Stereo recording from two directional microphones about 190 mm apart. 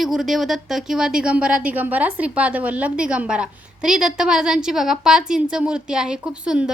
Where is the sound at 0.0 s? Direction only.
Centre (ahead or behind).